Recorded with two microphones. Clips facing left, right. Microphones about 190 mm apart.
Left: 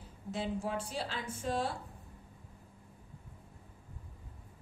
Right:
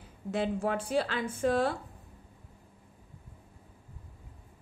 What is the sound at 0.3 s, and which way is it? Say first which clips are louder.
A woman's voice: right 6 dB; 60° right (ahead or behind).